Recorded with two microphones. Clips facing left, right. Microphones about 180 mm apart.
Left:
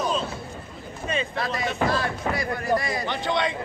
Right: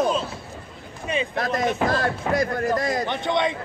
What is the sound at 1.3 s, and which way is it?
Speech, 45° right (ahead or behind).